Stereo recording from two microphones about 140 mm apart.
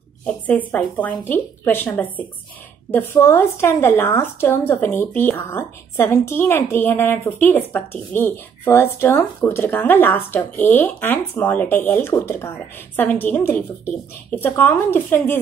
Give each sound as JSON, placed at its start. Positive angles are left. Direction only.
{"t": 0.2, "sound": "a woman's voice", "side_deg": 10}